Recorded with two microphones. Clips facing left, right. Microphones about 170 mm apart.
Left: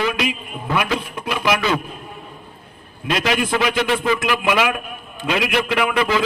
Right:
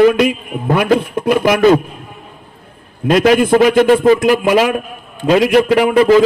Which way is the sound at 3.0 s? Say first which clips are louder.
Right 10 dB; 45° right (ahead or behind).